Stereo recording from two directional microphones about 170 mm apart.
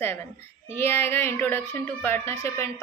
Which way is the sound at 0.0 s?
15° left (ahead or behind).